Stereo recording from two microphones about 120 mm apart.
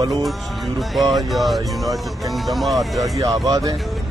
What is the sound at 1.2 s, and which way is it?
Speech, centre (ahead or behind).